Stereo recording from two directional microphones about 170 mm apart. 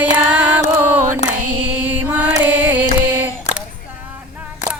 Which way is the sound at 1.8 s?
10° right (ahead or behind).